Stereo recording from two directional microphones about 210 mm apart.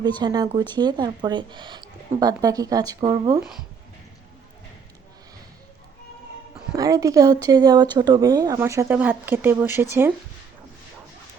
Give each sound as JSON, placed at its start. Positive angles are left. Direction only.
{"t": 0.2, "sound": "speech", "side_deg": -20}
{"t": 6.7, "sound": "speech", "side_deg": -15}